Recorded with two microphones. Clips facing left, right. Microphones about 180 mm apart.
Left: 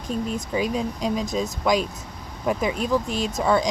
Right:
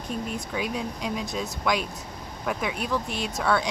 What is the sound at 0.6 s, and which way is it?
Speech, 40° left (ahead or behind).